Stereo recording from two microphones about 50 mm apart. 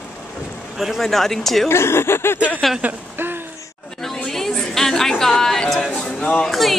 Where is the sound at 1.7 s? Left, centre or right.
Left.